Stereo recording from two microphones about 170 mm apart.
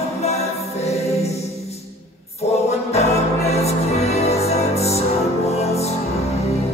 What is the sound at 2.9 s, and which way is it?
Music, 40° left (ahead or behind).